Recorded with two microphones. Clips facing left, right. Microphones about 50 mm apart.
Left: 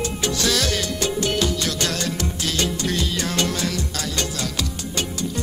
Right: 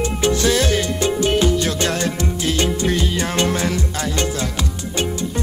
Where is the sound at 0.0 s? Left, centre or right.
Right.